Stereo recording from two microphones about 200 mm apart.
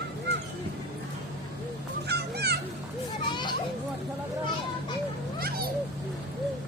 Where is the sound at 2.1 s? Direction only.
55° right (ahead or behind).